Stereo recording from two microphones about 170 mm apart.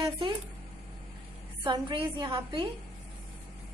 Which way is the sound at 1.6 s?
30° right (ahead or behind).